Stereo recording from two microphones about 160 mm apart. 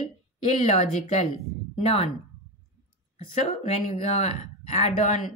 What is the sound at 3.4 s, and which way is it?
Speech, 45° left (ahead or behind).